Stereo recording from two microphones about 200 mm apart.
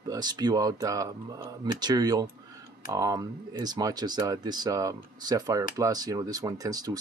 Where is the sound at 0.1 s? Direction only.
20° right (ahead or behind).